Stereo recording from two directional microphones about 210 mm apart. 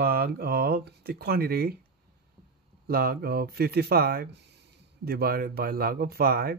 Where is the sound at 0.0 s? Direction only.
45° right (ahead or behind).